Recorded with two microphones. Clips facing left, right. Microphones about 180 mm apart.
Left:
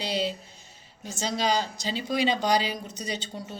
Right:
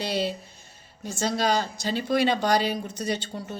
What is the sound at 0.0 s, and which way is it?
Speech, 50° right (ahead or behind).